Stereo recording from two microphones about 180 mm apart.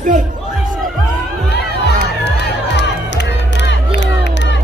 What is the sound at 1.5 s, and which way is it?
Crowd, 65° left (ahead or behind).